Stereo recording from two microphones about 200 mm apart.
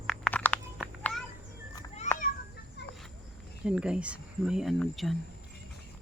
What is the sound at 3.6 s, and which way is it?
Speech, 5° right (ahead or behind).